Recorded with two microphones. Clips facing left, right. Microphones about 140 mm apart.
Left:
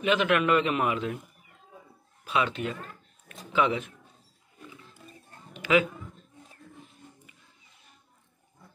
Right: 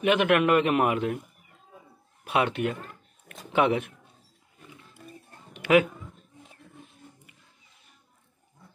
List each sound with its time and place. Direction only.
0.0 s a man's voice: 60° right (ahead or behind)
2.2 s a man's voice: 60° right (ahead or behind)
5.5 s a sound: 60° right (ahead or behind)